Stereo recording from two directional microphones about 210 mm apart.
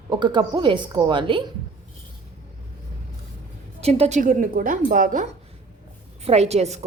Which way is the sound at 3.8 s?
30° right (ahead or behind).